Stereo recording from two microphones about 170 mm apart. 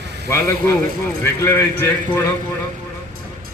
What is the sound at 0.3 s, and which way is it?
A man's voice, 15° left (ahead or behind).